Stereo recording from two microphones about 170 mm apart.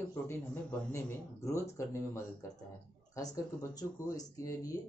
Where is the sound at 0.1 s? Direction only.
15° left (ahead or behind).